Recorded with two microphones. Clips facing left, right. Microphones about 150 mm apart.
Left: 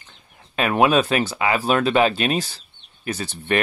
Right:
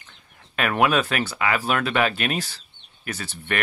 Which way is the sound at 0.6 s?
25° left (ahead or behind).